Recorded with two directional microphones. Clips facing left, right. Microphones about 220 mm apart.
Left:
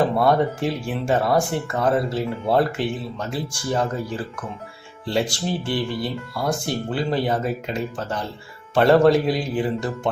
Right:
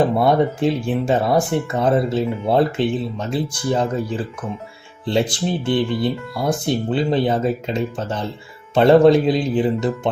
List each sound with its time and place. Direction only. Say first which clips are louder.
0.2 s speech: right 3 dB; 20° right (ahead or behind)